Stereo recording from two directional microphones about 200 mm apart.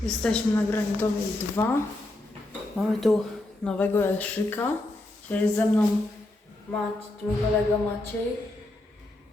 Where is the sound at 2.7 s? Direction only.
Centre (ahead or behind).